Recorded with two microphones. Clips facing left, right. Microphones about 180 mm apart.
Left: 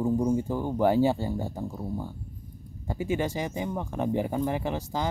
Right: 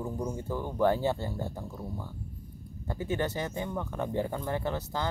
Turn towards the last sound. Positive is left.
turn(degrees=15)  # may be behind; listen again after turning